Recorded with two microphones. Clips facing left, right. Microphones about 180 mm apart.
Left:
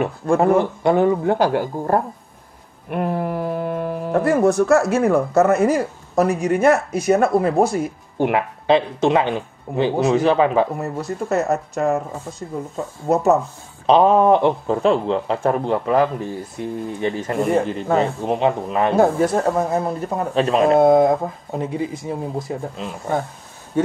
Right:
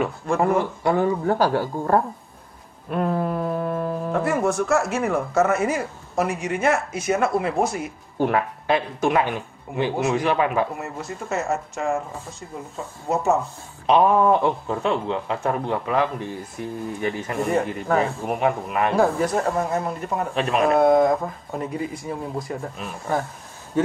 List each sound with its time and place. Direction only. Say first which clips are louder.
0.0 s speech: left 4 dB; 25° left (ahead or behind)
4.3 s a man's voice: left 7 dB; 35° left (ahead or behind)
8.2 s a man's voice: left 2 dB; 20° left (ahead or behind); by 13.4 s 40° left (ahead or behind)
13.8 s a man's voice: left 4 dB; 30° left (ahead or behind)
16.5 s speech: left 3 dB; 25° left (ahead or behind)